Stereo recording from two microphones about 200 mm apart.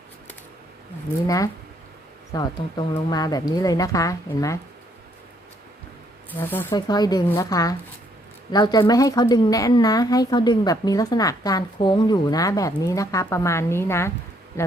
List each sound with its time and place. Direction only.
2.3 s speech: 20° left (ahead or behind)
6.4 s speech: 10° left (ahead or behind)